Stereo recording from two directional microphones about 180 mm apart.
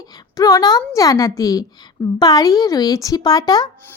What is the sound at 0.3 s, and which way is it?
A woman's voice, 20° left (ahead or behind).